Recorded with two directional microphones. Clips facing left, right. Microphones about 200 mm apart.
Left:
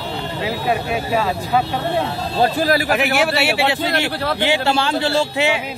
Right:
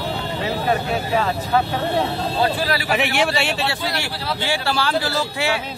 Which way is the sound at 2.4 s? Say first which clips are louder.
Left 5 dB; 45° left (ahead or behind).